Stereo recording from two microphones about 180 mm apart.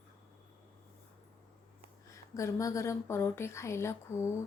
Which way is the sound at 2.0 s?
15° left (ahead or behind).